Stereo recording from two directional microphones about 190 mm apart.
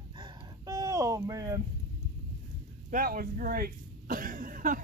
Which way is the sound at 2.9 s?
50° right (ahead or behind).